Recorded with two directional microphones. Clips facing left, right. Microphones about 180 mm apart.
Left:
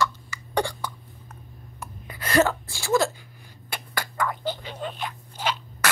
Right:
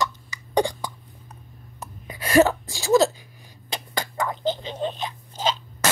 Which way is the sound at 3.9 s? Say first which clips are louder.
Right 1 dB; 25° right (ahead or behind).